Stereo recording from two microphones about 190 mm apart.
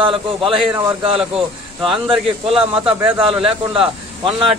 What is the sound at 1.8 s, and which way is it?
A man's voice, 25° right (ahead or behind).